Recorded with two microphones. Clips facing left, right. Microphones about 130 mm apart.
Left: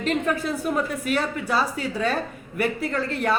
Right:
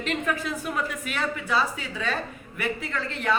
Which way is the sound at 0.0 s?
40° left (ahead or behind).